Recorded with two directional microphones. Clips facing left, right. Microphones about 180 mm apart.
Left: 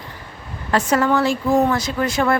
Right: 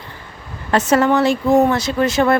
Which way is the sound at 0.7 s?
25° right (ahead or behind).